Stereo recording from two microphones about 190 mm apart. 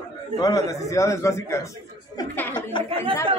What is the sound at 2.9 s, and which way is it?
Speech, 30° right (ahead or behind).